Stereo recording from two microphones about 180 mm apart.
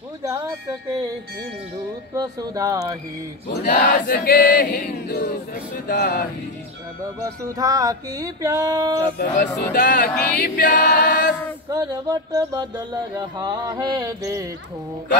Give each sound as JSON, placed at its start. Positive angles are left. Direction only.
{"t": 0.2, "sound": "speech", "side_deg": -15}
{"t": 2.1, "sound": "mantra", "side_deg": -20}
{"t": 3.4, "sound": "choir", "side_deg": 55}
{"t": 7.5, "sound": "mantra", "side_deg": -20}
{"t": 9.2, "sound": "speech", "side_deg": 45}
{"t": 9.6, "sound": "choir", "side_deg": 60}
{"t": 11.7, "sound": "mantra", "side_deg": -20}